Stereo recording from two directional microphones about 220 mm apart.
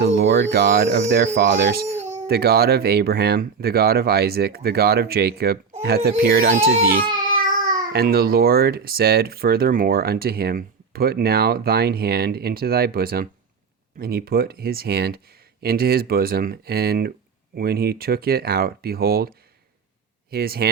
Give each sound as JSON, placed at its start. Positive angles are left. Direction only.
{"t": 0.0, "sound": "speech", "side_deg": -50}
{"t": 6.6, "sound": "speech", "side_deg": -30}
{"t": 7.9, "sound": "speech", "side_deg": -45}
{"t": 20.3, "sound": "speech", "side_deg": -45}